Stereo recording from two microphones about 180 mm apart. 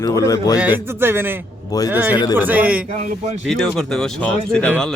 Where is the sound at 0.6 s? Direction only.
10° right (ahead or behind).